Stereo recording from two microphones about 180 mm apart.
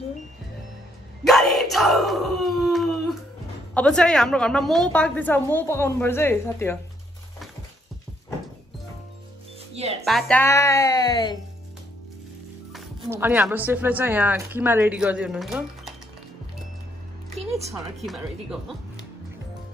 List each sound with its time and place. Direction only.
1.2 s a sound: centre (ahead or behind)
3.7 s a woman's voice: 5° left (ahead or behind)
10.0 s a woman's voice: centre (ahead or behind); by 11.3 s 25° left (ahead or behind)
13.1 s a woman's voice: 10° right (ahead or behind)
17.5 s speech: 35° right (ahead or behind)
18.0 s speech: centre (ahead or behind)